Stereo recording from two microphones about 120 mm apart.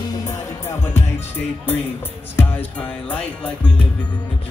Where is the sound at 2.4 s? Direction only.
15° left (ahead or behind).